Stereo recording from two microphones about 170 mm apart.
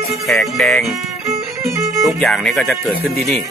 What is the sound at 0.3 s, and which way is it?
Speech, centre (ahead or behind).